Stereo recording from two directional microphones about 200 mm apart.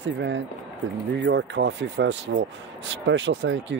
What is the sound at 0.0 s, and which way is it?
Speech, 65° right (ahead or behind).